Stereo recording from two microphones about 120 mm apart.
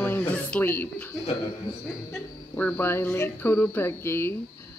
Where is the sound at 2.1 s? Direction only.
20° left (ahead or behind).